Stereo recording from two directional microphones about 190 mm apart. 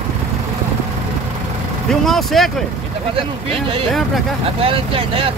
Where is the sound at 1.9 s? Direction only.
Centre (ahead or behind).